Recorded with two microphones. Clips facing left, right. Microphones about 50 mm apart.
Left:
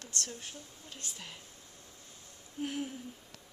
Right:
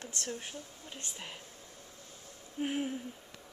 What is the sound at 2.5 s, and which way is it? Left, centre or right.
Speech, right.